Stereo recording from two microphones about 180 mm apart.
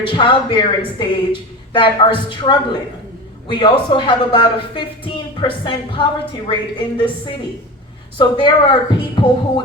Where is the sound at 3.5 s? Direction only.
25° left (ahead or behind).